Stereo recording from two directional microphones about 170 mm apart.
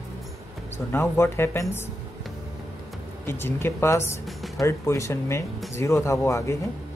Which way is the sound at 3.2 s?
15° left (ahead or behind).